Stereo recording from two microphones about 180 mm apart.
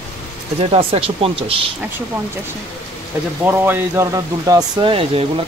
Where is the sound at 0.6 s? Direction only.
35° right (ahead or behind).